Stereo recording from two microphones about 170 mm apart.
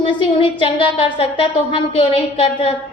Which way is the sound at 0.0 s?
30° left (ahead or behind).